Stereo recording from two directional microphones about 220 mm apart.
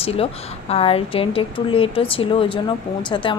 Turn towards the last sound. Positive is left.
turn(degrees=20)  # may be behind; listen again after turning